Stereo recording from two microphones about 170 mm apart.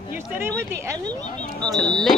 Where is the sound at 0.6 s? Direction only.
15° right (ahead or behind).